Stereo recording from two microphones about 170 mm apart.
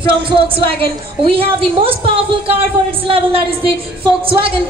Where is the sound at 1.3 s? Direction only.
35° right (ahead or behind).